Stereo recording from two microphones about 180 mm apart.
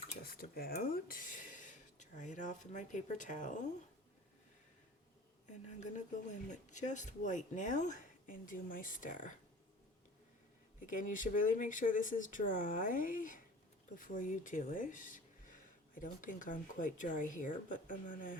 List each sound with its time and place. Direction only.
0.3 s speech: 55° left (ahead or behind)
5.5 s a woman's voice: 40° left (ahead or behind)
10.9 s speech: 45° left (ahead or behind)